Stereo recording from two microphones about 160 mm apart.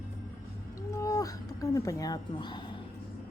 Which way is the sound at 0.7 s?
20° left (ahead or behind).